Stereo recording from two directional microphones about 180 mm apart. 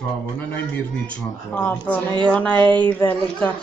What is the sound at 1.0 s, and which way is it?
A child's voice, 10° left (ahead or behind).